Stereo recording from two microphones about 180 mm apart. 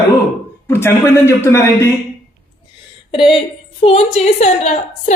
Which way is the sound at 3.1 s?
30° left (ahead or behind).